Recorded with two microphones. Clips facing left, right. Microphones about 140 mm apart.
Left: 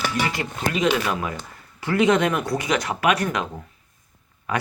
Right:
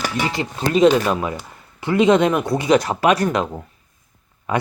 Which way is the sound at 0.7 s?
40° right (ahead or behind).